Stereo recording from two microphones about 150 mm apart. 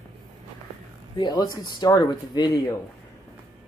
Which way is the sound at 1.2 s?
30° left (ahead or behind).